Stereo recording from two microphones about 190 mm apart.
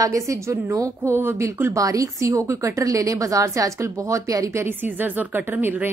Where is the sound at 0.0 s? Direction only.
15° right (ahead or behind).